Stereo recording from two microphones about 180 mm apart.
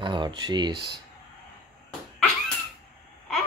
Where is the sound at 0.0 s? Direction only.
25° right (ahead or behind).